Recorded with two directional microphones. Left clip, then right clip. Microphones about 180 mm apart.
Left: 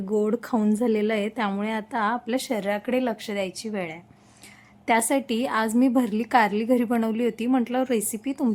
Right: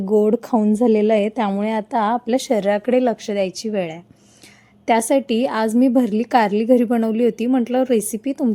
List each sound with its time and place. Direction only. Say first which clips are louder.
0.1 s speech: right 8 dB; 15° right (ahead or behind)
0.9 s a woman's voice: right 8 dB; 20° right (ahead or behind)